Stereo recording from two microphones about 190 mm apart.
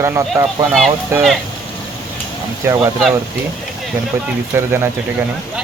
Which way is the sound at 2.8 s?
Centre (ahead or behind).